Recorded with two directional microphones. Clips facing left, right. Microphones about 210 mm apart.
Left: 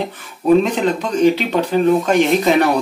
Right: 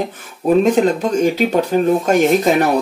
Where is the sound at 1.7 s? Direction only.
45° right (ahead or behind).